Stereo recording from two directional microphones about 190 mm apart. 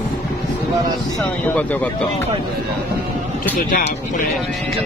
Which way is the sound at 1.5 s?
10° left (ahead or behind).